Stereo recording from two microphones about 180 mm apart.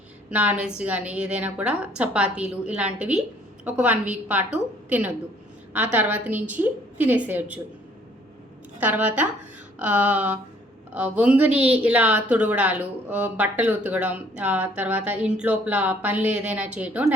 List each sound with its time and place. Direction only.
0.3 s a woman's voice: 5° right (ahead or behind)
8.8 s a woman's voice: 10° right (ahead or behind)